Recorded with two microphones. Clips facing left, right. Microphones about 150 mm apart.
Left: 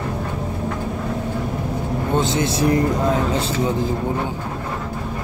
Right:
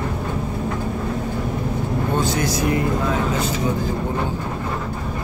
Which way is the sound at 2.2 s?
25° left (ahead or behind).